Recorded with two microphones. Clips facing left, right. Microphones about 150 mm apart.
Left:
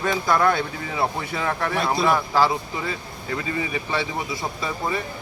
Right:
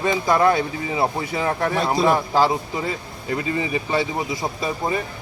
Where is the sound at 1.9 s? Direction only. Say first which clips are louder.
Right 3 dB; 35° right (ahead or behind).